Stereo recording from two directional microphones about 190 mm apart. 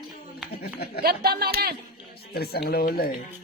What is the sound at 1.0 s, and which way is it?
Speech, 55° right (ahead or behind).